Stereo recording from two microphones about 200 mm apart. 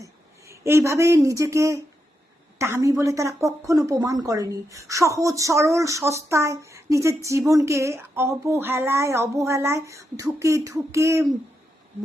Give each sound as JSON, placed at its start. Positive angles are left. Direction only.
{"t": 0.0, "sound": "a woman's voice", "side_deg": -15}